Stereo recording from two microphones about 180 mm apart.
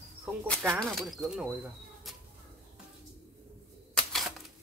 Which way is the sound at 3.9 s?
Centre (ahead or behind).